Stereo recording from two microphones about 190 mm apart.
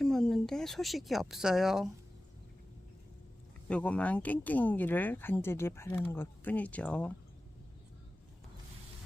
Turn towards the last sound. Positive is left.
turn(degrees=5)  # may be behind; listen again after turning